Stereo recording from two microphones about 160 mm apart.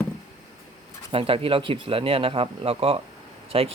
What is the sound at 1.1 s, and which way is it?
Speech, 35° right (ahead or behind).